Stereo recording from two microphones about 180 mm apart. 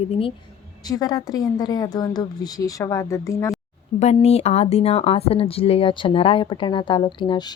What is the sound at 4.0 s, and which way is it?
Speech, 35° left (ahead or behind).